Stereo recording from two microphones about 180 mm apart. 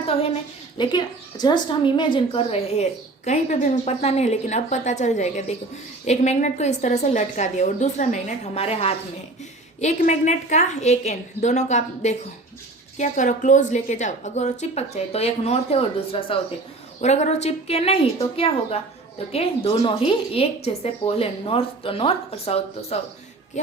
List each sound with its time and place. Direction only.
0.8 s a woman's voice: 25° left (ahead or behind)